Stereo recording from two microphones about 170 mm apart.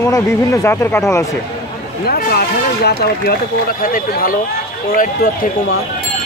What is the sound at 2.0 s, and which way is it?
Speech, 65° left (ahead or behind).